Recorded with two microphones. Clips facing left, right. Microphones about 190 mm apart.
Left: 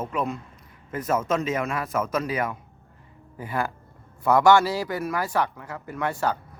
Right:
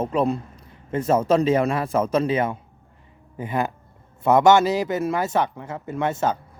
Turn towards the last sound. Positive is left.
turn(degrees=-20)  # may be behind; listen again after turning